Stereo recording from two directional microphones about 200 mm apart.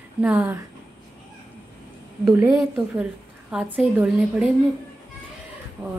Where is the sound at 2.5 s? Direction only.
Centre (ahead or behind).